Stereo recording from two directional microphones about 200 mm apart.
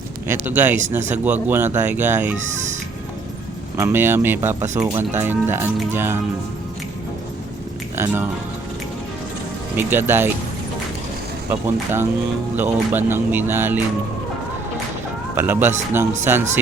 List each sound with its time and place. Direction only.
0.3 s speech: 10° right (ahead or behind)
3.8 s speech: 15° right (ahead or behind)
7.9 s speech: 15° right (ahead or behind)
9.7 s speech: 10° right (ahead or behind)
11.4 s speech: 10° right (ahead or behind)
15.4 s speech: 10° right (ahead or behind)